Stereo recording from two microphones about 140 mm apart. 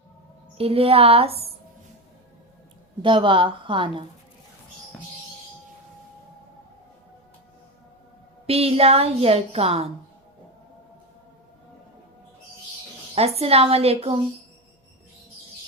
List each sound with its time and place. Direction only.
0.5 s a woman's voice: 45° right (ahead or behind)
3.0 s a woman's voice: 35° right (ahead or behind)
8.4 s a woman's voice: 45° right (ahead or behind)
13.1 s a woman's voice: 45° right (ahead or behind)